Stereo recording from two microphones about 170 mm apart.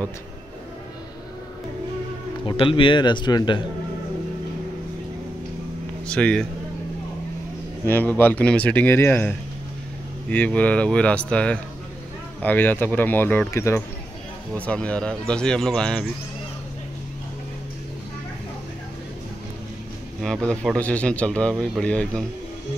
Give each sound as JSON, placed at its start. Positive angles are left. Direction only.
{"t": 2.4, "sound": "a man's voice", "side_deg": 30}
{"t": 6.0, "sound": "a man's voice", "side_deg": 5}
{"t": 7.8, "sound": "a man's voice", "side_deg": 10}
{"t": 10.3, "sound": "a man's voice", "side_deg": 10}
{"t": 20.2, "sound": "a man's voice", "side_deg": 5}